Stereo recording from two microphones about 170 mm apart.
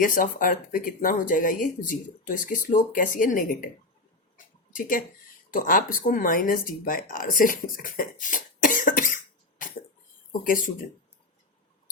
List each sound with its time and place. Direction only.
0.0 s speech: 55° left (ahead or behind)
4.7 s speech: 50° left (ahead or behind)
10.4 s speech: 55° left (ahead or behind)